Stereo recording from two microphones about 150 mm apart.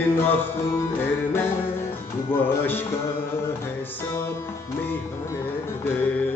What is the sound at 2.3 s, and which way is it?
Music, 15° left (ahead or behind).